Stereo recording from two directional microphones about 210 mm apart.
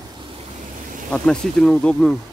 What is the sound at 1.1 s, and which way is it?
Speech, 5° left (ahead or behind).